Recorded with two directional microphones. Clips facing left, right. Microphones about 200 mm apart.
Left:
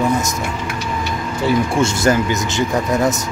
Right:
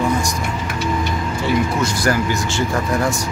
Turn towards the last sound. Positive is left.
turn(degrees=20)  # may be behind; listen again after turning